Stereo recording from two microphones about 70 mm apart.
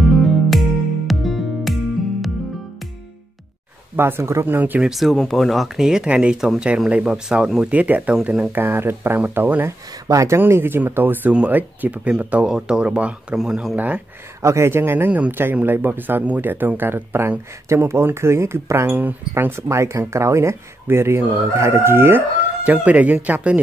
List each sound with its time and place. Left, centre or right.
0.0 s music: centre
3.9 s speech: right
4.6 s speech: right
4.8 s speech: centre
5.1 s speech: centre
5.9 s speech: centre
7.6 s speech: right
8.5 s speech: right
10.0 s speech: right
10.5 s speech: right; by 13.7 s centre
13.7 s speech: right
14.4 s speech: right
18.9 s speech: right
22.7 s speech: right